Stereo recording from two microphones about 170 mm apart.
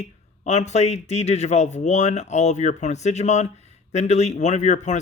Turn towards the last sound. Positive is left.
turn(degrees=45)  # may be behind; listen again after turning